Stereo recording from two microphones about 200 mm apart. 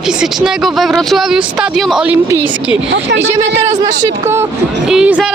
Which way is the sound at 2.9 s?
60° right (ahead or behind).